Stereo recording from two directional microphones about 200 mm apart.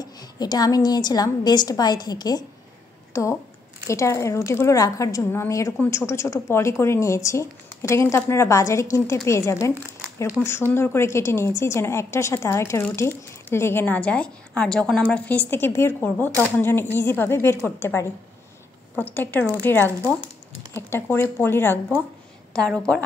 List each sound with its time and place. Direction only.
0.0 s a woman's voice: 20° left (ahead or behind)
3.1 s a sound: 15° left (ahead or behind)
3.9 s a woman's voice: 15° left (ahead or behind)